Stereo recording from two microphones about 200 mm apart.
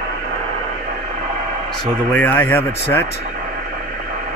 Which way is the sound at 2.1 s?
10° left (ahead or behind).